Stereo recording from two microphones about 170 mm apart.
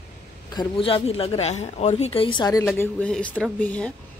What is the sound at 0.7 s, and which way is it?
Speech, 35° left (ahead or behind).